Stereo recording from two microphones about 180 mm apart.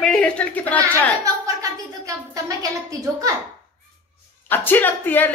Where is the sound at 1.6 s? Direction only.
20° right (ahead or behind).